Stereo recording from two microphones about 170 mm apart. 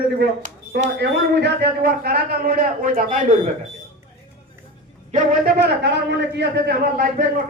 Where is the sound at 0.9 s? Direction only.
80° right; by 3.3 s 50° right (ahead or behind).